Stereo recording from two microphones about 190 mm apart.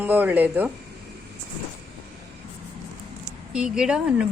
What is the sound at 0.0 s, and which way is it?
Speech, 10° right (ahead or behind).